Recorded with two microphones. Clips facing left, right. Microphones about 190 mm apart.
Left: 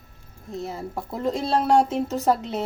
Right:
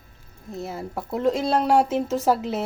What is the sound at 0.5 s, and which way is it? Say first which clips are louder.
Speech: even; centre (ahead or behind).